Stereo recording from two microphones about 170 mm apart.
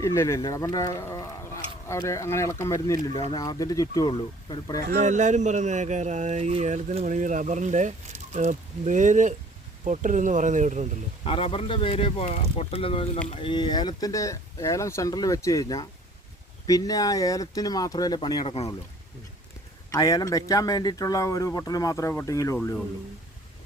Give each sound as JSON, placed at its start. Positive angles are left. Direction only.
{"t": 0.0, "sound": "speech", "side_deg": 15}
{"t": 3.1, "sound": "speech", "side_deg": 35}
{"t": 3.3, "sound": "a man's voice", "side_deg": 20}
{"t": 4.9, "sound": "speech", "side_deg": -45}
{"t": 11.2, "sound": "a man's voice", "side_deg": 35}
{"t": 18.4, "sound": "speech", "side_deg": 35}
{"t": 19.9, "sound": "a man's voice", "side_deg": 20}